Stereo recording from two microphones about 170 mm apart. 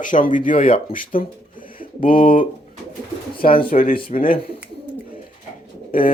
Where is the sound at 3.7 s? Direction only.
55° left (ahead or behind).